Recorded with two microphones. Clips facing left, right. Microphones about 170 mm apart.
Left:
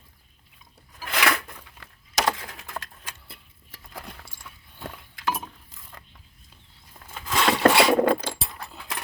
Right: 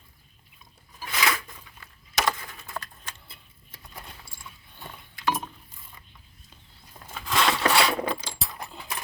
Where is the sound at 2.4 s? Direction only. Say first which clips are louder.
Left 1 dB; 85° left.